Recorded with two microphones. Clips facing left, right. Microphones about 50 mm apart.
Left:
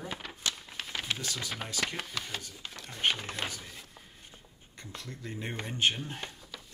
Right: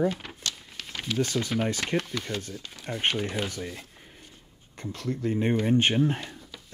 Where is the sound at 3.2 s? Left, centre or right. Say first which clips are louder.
Right 7 dB; centre.